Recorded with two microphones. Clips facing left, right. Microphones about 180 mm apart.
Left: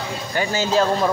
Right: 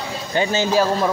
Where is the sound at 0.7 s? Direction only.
10° right (ahead or behind).